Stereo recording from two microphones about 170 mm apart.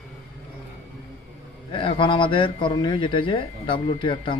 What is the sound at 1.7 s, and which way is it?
A man's voice, 30° left (ahead or behind).